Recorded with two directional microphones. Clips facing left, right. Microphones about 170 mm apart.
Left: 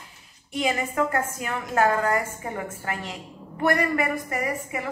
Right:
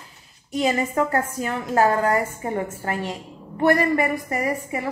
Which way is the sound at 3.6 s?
35° right (ahead or behind).